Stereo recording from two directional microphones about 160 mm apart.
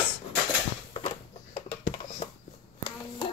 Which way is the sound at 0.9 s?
35° left (ahead or behind).